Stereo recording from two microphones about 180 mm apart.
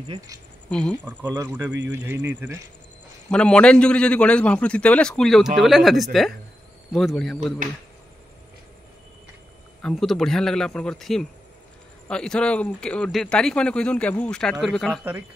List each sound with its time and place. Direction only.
0.7 s speech: 5° left (ahead or behind)
1.0 s speech: 5° right (ahead or behind)
1.4 s speech: 20° right (ahead or behind)
3.3 s a man's voice: 5° left (ahead or behind)
9.8 s a man's voice: 5° left (ahead or behind)